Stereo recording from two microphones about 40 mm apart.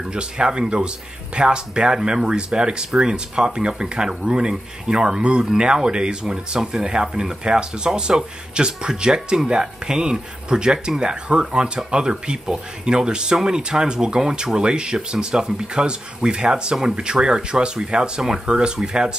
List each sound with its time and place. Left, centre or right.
0.1 s speech: right